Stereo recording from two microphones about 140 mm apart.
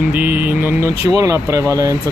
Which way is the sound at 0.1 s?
15° right (ahead or behind).